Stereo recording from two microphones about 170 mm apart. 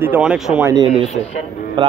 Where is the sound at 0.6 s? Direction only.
25° right (ahead or behind).